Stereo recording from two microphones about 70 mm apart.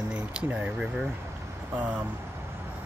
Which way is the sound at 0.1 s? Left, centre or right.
Centre.